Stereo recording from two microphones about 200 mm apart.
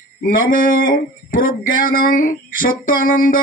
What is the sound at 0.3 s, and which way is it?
Speech, 45° left (ahead or behind).